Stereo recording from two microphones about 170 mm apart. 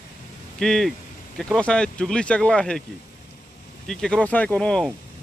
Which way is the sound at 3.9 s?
5° left (ahead or behind).